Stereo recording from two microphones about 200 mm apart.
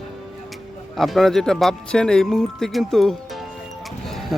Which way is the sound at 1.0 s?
Centre (ahead or behind).